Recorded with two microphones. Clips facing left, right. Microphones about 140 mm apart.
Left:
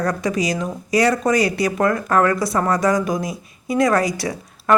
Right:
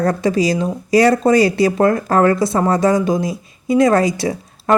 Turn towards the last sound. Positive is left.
turn(degrees=-25)  # may be behind; listen again after turning